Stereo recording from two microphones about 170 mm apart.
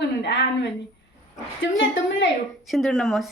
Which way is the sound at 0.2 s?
90° left.